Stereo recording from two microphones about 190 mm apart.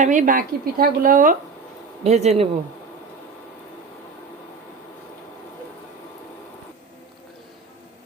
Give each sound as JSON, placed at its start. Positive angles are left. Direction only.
{"t": 0.0, "sound": "speech", "side_deg": -40}